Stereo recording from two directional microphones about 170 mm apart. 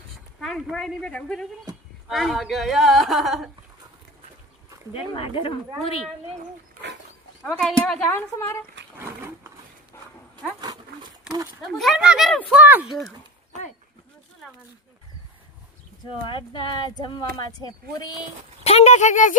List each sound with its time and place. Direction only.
0.3 s a woman's voice: centre (ahead or behind)
4.9 s speech: 30° left (ahead or behind)
7.4 s a woman's voice: 5° left (ahead or behind)
7.9 s a woman's voice: 15° left (ahead or behind)
9.0 s wild animals: 15° right (ahead or behind)
10.6 s dog: 25° right (ahead or behind)
11.7 s a woman's voice: centre (ahead or behind)
12.6 s speech: 10° right (ahead or behind)
16.2 s speech: 30° left (ahead or behind)
18.6 s speech: 40° left (ahead or behind)